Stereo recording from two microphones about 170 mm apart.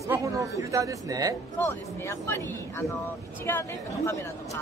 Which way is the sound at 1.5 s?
15° left (ahead or behind).